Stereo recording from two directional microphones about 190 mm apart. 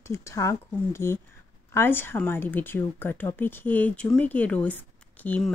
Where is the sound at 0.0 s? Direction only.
15° left (ahead or behind).